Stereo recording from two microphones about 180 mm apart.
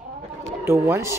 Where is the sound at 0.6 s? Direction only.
15° right (ahead or behind).